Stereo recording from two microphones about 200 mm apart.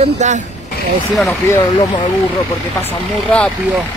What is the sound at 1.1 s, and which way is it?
Speech, centre (ahead or behind).